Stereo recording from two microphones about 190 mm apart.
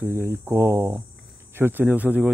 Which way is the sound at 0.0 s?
15° right (ahead or behind).